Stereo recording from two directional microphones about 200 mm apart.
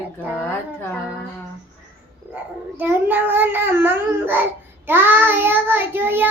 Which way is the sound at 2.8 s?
10° right (ahead or behind).